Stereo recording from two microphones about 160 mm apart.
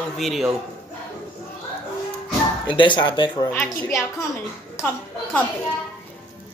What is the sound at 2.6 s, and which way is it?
Speech, 30° left (ahead or behind).